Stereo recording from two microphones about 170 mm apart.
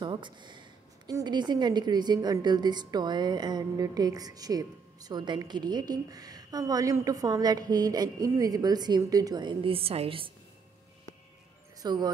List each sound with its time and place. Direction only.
0.0 s a woman's voice: 25° right (ahead or behind)
11.8 s speech: 25° right (ahead or behind)